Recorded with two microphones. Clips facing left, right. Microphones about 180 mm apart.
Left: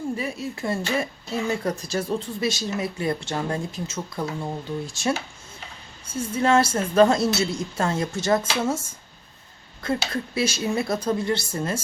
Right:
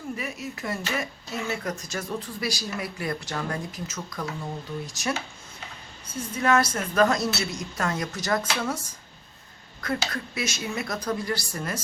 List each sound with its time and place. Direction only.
0.2 s speech: 30° left (ahead or behind)
6.1 s speech: 30° left (ahead or behind)